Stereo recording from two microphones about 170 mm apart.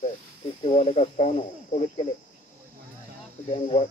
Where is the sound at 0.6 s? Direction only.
40° left (ahead or behind).